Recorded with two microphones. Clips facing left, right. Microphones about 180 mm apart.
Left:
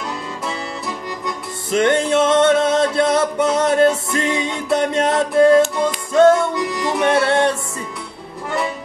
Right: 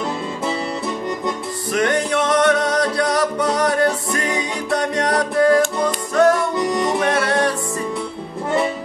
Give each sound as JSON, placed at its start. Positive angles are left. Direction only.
{"t": 1.7, "sound": "music", "side_deg": 25}